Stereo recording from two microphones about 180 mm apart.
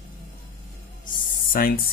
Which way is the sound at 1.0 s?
50° left (ahead or behind).